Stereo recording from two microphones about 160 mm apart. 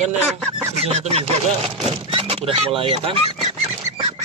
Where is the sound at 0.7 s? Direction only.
40° right (ahead or behind).